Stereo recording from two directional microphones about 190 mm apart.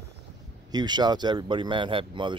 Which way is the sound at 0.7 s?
20° right (ahead or behind).